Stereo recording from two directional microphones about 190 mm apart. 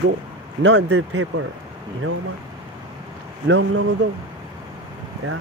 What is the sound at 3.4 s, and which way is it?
Speech, 70° right (ahead or behind).